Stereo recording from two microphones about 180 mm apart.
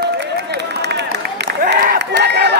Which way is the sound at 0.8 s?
70° right (ahead or behind).